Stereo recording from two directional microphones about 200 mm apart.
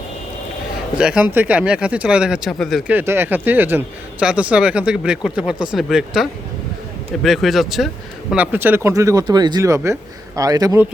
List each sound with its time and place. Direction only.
0.9 s speech: 5° right (ahead or behind)